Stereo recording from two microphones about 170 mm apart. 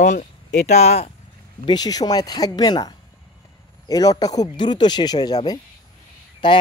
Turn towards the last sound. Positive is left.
turn(degrees=25)  # may be behind; listen again after turning